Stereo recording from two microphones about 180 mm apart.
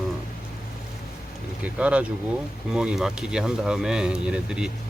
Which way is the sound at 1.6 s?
5° right (ahead or behind).